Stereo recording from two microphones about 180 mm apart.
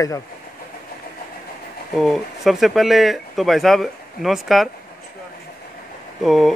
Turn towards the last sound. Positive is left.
turn(degrees=0)  # may be behind; listen again after turning